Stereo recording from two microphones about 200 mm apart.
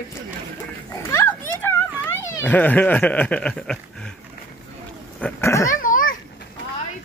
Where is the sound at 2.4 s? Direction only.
10° left (ahead or behind).